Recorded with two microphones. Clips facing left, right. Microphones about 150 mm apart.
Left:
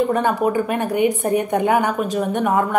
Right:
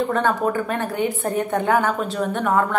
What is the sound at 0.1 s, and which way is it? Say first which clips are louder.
A woman's voice: left 2 dB; 15° left (ahead or behind).